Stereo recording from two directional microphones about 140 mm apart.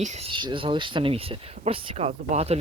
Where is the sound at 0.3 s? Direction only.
35° right (ahead or behind).